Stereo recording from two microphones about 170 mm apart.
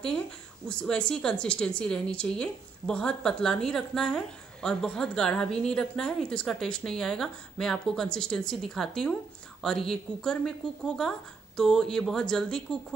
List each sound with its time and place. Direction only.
0.7 s a woman's voice: 5° left (ahead or behind)